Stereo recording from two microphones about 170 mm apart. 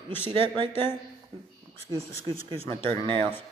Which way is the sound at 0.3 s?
30° right (ahead or behind).